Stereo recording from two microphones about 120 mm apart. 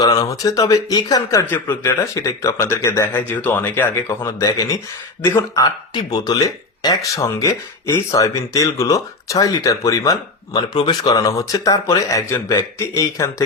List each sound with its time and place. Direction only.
0.1 s speech: 30° left (ahead or behind)
1.5 s speech: 15° left (ahead or behind)
5.6 s speech: 35° left (ahead or behind)